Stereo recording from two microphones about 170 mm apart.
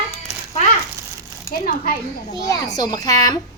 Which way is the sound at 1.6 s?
55° left (ahead or behind).